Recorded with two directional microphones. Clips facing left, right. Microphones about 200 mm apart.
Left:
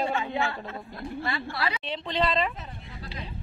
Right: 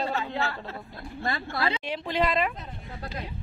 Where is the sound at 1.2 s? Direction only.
45° right (ahead or behind).